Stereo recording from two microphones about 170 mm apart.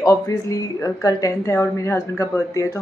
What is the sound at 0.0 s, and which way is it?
A woman's voice, 20° left (ahead or behind).